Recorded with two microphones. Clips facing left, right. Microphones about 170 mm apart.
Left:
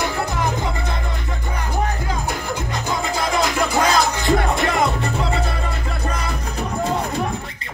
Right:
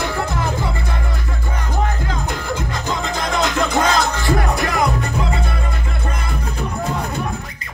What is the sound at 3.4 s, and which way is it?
Music, 5° left (ahead or behind).